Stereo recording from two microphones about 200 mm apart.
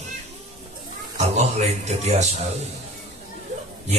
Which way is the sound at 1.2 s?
35° right (ahead or behind).